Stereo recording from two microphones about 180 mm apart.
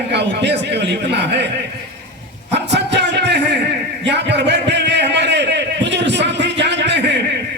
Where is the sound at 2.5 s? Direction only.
70° right (ahead or behind).